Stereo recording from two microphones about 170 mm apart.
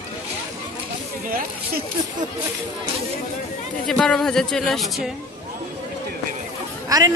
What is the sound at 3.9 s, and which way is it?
Speech, 5° left (ahead or behind).